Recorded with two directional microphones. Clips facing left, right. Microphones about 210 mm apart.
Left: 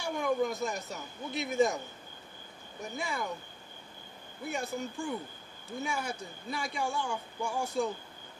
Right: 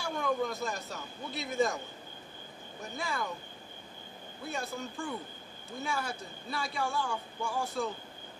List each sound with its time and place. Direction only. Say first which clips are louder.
0.0 s a sound: left 2 dB; 20° left (ahead or behind)
0.7 s speech: left 1 dB; 20° left (ahead or behind)
3.0 s a man's voice: even; 15° left (ahead or behind)
4.5 s a man's voice: left 3 dB; 15° left (ahead or behind)